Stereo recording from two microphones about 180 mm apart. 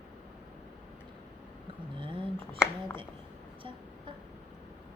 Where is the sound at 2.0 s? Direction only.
30° right (ahead or behind).